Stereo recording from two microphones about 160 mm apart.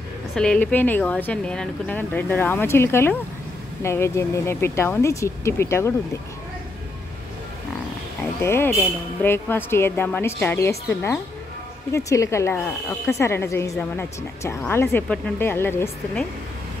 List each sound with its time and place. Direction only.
0.3 s speech: 5° left (ahead or behind)
8.4 s speech: 15° left (ahead or behind)